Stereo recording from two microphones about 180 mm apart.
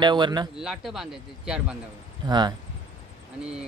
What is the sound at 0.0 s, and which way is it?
Speech, 25° right (ahead or behind).